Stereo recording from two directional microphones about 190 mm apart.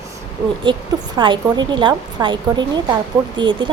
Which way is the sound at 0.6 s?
25° right (ahead or behind).